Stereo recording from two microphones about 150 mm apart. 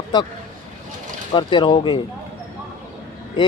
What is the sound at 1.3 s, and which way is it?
Speech, 30° left (ahead or behind).